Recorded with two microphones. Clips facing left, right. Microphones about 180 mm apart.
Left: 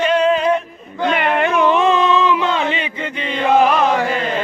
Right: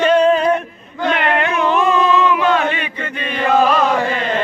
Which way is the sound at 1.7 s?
25° left (ahead or behind).